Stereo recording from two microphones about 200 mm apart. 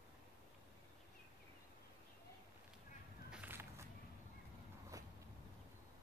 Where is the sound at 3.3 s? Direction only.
10° right (ahead or behind).